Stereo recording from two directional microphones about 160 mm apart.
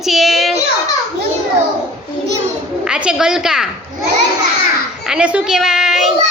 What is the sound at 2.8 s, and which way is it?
Speech, 5° right (ahead or behind).